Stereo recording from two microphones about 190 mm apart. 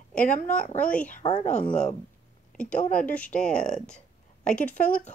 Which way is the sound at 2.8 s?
5° left (ahead or behind).